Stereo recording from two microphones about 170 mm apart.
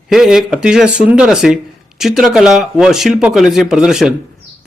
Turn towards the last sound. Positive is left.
turn(degrees=-5)  # may be behind; listen again after turning